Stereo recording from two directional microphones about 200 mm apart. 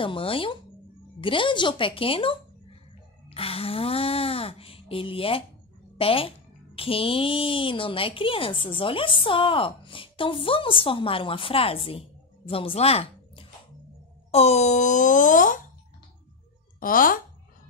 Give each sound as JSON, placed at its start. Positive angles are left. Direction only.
{"t": 0.0, "sound": "speech", "side_deg": 25}
{"t": 16.8, "sound": "speech", "side_deg": 45}